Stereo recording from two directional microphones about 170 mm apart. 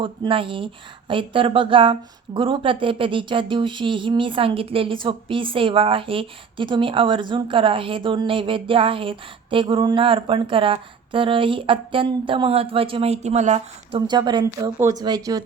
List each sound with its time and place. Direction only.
0.0 s a woman's voice: 30° right (ahead or behind)
14.1 s speech: 25° right (ahead or behind)